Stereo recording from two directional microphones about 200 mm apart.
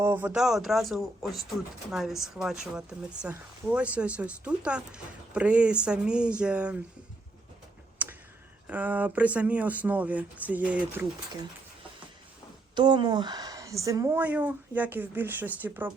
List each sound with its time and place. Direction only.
0.0 s speech: 10° right (ahead or behind)
8.0 s clicking: 10° right (ahead or behind)
8.6 s speech: 5° right (ahead or behind)
12.7 s speech: 20° right (ahead or behind)